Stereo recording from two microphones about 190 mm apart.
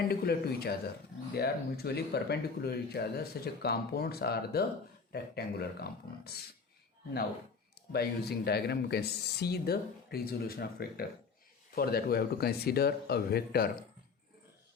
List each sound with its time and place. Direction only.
0.1 s speech: 55° left (ahead or behind)
7.8 s speech: 55° left (ahead or behind)